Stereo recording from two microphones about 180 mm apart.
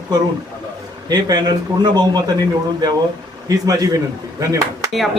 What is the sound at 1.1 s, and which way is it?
Speech, 25° right (ahead or behind).